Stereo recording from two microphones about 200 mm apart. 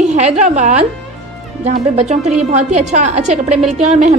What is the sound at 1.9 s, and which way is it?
A woman's voice, 35° right (ahead or behind).